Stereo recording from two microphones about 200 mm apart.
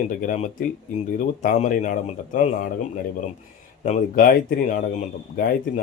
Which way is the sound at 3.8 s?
40° left (ahead or behind).